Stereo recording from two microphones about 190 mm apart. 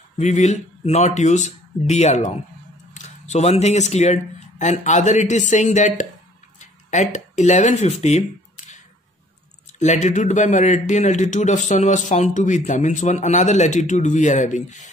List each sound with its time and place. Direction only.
0.2 s a man's voice: 35° left (ahead or behind)
6.6 s a sound: 40° left (ahead or behind)
9.7 s a man's voice: 40° left (ahead or behind)